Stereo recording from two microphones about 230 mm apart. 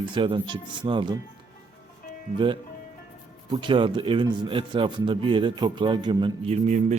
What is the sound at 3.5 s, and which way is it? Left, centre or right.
A man's voice, right.